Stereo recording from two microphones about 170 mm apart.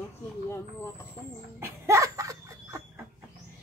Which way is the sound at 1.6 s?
15° right (ahead or behind).